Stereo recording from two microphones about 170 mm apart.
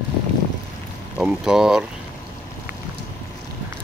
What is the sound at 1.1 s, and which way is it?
Speech, 5° right (ahead or behind).